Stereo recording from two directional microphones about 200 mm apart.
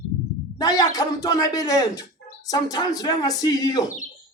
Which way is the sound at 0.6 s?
20° left (ahead or behind).